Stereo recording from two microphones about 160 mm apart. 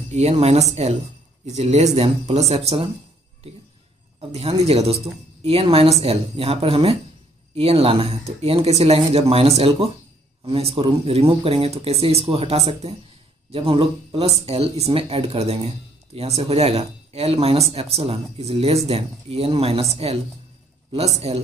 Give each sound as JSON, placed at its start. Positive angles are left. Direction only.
{"t": 0.1, "sound": "a woman's voice", "side_deg": -40}
{"t": 4.3, "sound": "a woman's voice", "side_deg": -40}